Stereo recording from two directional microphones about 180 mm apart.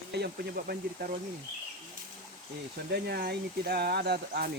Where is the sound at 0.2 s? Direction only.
55° right (ahead or behind).